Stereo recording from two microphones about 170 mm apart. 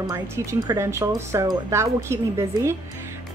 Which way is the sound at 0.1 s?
20° right (ahead or behind).